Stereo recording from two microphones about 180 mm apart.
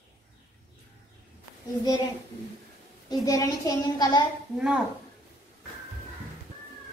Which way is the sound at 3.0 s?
20° left (ahead or behind).